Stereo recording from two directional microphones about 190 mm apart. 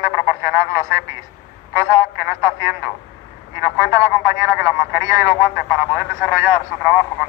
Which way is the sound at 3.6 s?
15° right (ahead or behind).